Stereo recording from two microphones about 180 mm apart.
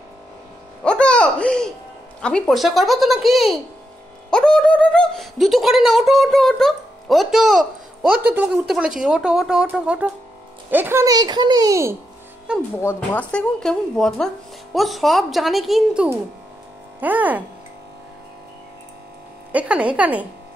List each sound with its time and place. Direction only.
0.8 s music: 5° left (ahead or behind)
2.2 s speech: 5° left (ahead or behind); by 12.0 s 15° right (ahead or behind)
12.5 s speech: 5° right (ahead or behind)
12.8 s speech: 10° left (ahead or behind); by 17.4 s 10° right (ahead or behind)
19.5 s speech: 5° right (ahead or behind)